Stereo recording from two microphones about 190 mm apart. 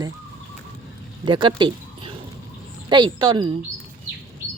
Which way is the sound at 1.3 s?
25° right (ahead or behind).